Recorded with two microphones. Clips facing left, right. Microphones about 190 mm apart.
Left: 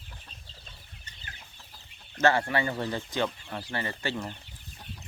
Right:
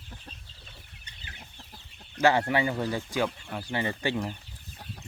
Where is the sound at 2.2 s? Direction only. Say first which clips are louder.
Right 1 dB; 15° right (ahead or behind).